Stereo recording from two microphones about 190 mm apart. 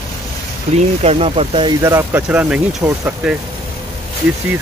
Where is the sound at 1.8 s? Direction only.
10° right (ahead or behind).